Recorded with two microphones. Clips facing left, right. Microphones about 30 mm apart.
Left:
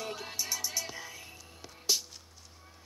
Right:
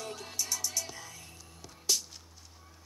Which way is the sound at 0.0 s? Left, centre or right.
Centre.